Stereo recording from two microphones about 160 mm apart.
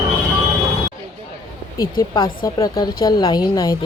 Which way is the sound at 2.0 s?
25° left (ahead or behind).